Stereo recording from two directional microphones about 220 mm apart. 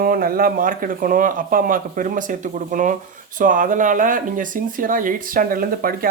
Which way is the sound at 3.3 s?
35° right (ahead or behind).